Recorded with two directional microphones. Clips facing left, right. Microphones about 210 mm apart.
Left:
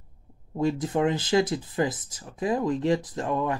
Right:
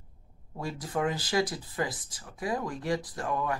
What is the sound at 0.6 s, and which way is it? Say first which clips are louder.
Speech: left 8 dB; 25° left (ahead or behind).